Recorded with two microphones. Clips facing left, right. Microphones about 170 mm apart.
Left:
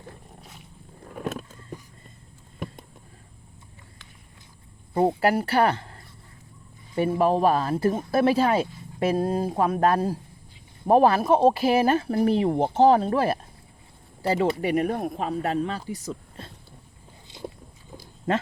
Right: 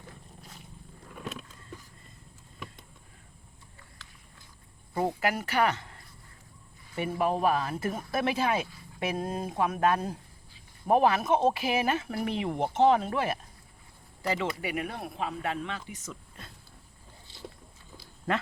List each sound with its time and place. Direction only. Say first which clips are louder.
1.0 s vehicle: left 8 dB; 45° left (ahead or behind)
4.9 s speech: left 8 dB; 30° left (ahead or behind)
18.3 s speech: left 5 dB; 20° left (ahead or behind)